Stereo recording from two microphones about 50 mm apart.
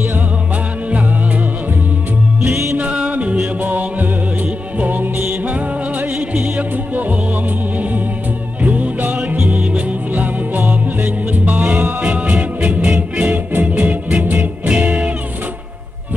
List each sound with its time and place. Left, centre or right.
2.5 s music: right
2.8 s music: right
3.6 s music: right
8.6 s music: right